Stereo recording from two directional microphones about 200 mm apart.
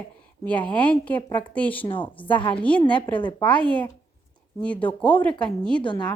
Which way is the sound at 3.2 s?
25° left (ahead or behind).